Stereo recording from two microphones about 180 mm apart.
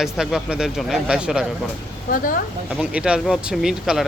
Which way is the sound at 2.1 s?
50° left (ahead or behind).